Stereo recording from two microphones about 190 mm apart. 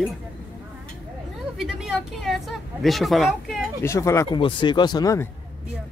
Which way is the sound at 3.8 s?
15° left (ahead or behind).